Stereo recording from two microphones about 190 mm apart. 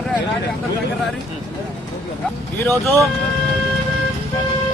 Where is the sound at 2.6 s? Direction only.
Centre (ahead or behind).